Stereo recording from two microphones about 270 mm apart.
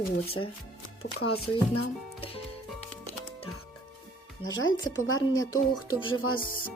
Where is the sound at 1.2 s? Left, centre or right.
Left.